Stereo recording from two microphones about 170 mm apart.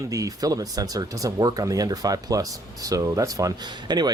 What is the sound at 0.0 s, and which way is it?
Speech, 20° right (ahead or behind).